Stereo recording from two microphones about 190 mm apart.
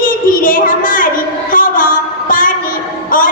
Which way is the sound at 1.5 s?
45° left (ahead or behind).